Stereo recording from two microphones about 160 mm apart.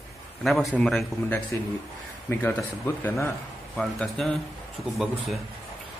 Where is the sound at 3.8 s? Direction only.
5° left (ahead or behind).